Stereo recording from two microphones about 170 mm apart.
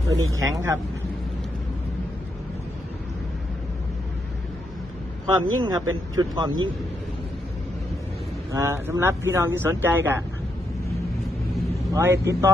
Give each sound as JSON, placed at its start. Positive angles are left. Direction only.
{"t": 0.4, "sound": "speech", "side_deg": -20}
{"t": 5.2, "sound": "speech", "side_deg": -25}
{"t": 8.5, "sound": "speech", "side_deg": -15}
{"t": 11.9, "sound": "speech", "side_deg": -15}